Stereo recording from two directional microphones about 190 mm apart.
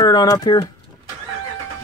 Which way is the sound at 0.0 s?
20° left (ahead or behind).